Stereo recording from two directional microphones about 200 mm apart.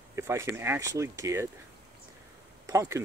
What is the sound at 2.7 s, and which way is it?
Speech, 15° right (ahead or behind).